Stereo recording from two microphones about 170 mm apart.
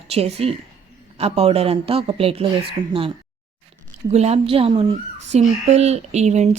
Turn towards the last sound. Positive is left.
turn(degrees=-40)  # may be behind; listen again after turning